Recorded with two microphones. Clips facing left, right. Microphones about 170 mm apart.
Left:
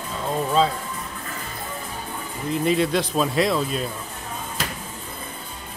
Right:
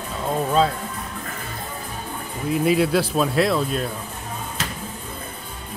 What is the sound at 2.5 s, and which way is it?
Speech, 5° right (ahead or behind).